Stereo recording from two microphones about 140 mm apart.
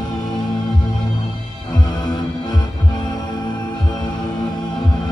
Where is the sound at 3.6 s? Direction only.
30° left (ahead or behind).